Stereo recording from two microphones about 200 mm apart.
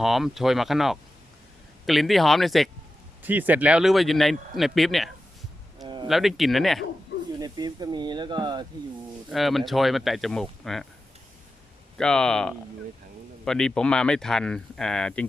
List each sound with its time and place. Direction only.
0.0 s speech: centre (ahead or behind)
5.8 s a sound: 25° right (ahead or behind)
6.1 s speech: centre (ahead or behind)
7.3 s speech: 20° right (ahead or behind)
9.3 s speech: centre (ahead or behind)
11.9 s speech: 5° left (ahead or behind)